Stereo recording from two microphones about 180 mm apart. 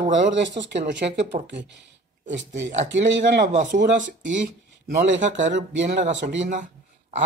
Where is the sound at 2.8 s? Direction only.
90° right.